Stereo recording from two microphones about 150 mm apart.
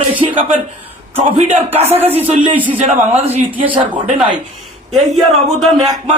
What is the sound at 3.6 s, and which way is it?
Speech, 10° right (ahead or behind).